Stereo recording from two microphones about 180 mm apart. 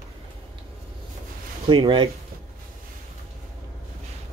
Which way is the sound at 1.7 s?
25° right (ahead or behind).